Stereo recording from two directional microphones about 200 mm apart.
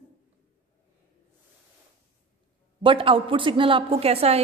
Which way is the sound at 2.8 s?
25° right (ahead or behind).